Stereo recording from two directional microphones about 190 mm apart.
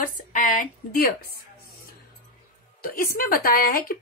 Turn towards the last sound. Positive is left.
turn(degrees=50)  # may be behind; listen again after turning